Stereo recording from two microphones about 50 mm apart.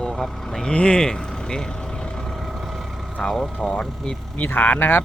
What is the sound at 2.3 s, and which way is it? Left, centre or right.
Vehicle, centre.